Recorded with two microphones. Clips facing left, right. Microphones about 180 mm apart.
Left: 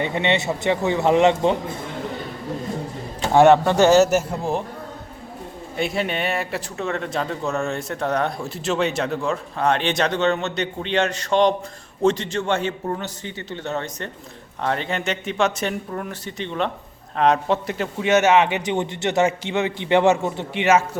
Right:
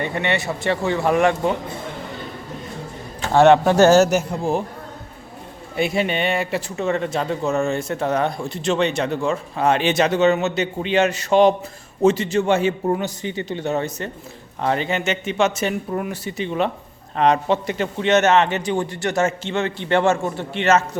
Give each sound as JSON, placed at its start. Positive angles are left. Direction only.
{"t": 0.0, "sound": "speech", "side_deg": 20}
{"t": 3.3, "sound": "a man's voice", "side_deg": 10}
{"t": 5.7, "sound": "a man's voice", "side_deg": 0}